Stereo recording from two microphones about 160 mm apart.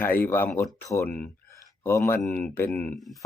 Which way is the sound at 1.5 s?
20° left (ahead or behind).